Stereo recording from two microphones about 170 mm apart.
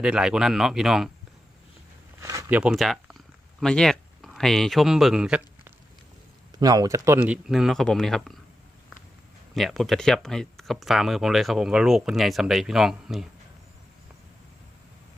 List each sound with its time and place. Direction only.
0.0 s speech: 5° right (ahead or behind)
2.2 s a sound: 20° right (ahead or behind)
2.6 s speech: 5° right (ahead or behind)
6.6 s speech: 20° right (ahead or behind); by 8.4 s centre (ahead or behind)
9.6 s speech: centre (ahead or behind)